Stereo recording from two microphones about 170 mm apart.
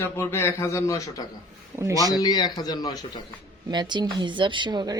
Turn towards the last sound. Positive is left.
turn(degrees=-25)  # may be behind; listen again after turning